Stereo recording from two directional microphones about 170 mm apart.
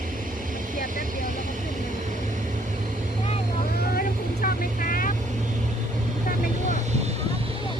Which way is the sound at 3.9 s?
55° left (ahead or behind).